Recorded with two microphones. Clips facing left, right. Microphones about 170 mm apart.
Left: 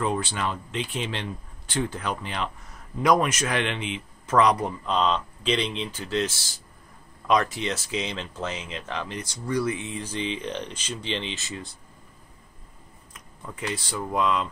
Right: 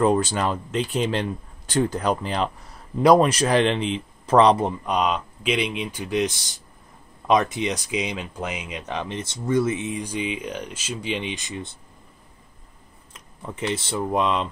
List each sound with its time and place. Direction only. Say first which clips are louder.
0.0 s a man's voice: right 7 dB; 40° right (ahead or behind); by 11.7 s 20° right (ahead or behind)
13.1 s speech: right 5 dB; 25° right (ahead or behind)